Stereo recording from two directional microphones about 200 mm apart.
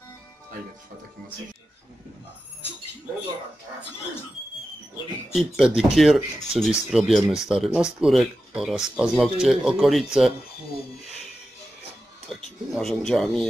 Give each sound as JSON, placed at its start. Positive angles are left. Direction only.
{"t": 5.3, "sound": "speech", "side_deg": 0}
{"t": 12.3, "sound": "speech", "side_deg": 0}